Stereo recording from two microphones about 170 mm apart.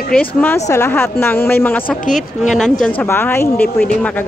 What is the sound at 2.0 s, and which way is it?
Speech, 50° left (ahead or behind).